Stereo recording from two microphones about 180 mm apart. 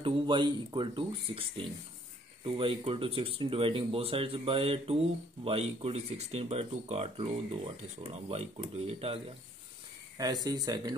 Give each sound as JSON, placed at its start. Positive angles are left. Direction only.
{"t": 0.0, "sound": "speech", "side_deg": -25}
{"t": 10.1, "sound": "speech", "side_deg": -20}